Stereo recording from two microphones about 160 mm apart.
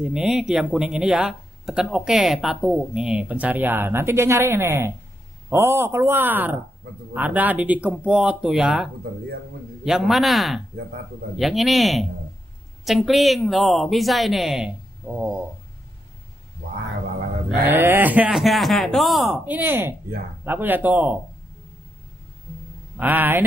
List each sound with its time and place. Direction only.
0.0 s speech: 5° right (ahead or behind)
17.6 s speech: 15° right (ahead or behind)
19.4 s speech: 10° right (ahead or behind)
22.9 s speech: 10° right (ahead or behind)